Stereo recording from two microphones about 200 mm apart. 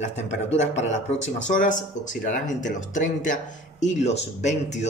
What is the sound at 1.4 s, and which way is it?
A man's voice, 40° left (ahead or behind).